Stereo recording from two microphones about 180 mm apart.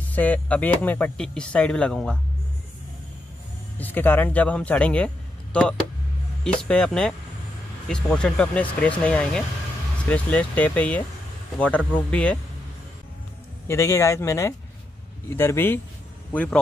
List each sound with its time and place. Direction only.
0.0 s speech: 10° left (ahead or behind)
3.7 s a man's voice: 10° left (ahead or behind)
13.7 s speech: 15° left (ahead or behind)